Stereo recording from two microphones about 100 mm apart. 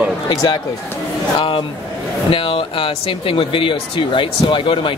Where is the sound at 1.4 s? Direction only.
60° left (ahead or behind).